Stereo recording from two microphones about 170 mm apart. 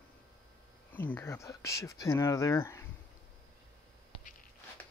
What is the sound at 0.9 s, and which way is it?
Speech, 10° left (ahead or behind).